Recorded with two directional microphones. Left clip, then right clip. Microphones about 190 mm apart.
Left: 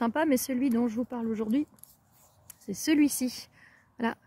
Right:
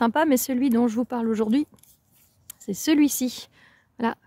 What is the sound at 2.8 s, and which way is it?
Speech, 30° right (ahead or behind).